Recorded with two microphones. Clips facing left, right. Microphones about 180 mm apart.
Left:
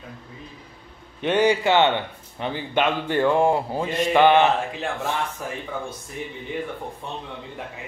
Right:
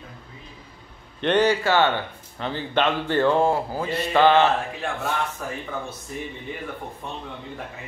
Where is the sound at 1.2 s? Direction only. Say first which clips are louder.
Even; 10° left (ahead or behind).